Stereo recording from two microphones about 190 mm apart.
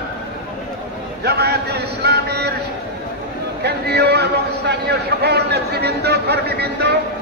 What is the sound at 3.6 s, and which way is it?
A man's voice, 60° right (ahead or behind).